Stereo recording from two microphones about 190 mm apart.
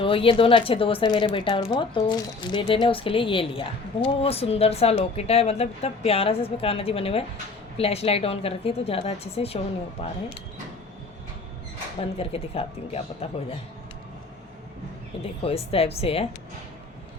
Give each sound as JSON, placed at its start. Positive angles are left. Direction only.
{"t": 0.0, "sound": "a woman's voice", "side_deg": 30}
{"t": 12.1, "sound": "a woman's voice", "side_deg": 30}
{"t": 15.2, "sound": "a woman's voice", "side_deg": 30}